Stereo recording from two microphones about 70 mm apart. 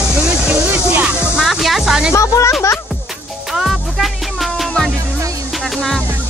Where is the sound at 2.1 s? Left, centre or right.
Left.